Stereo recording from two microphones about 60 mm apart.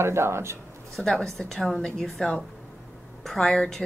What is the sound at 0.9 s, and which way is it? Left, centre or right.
A woman's voice, centre.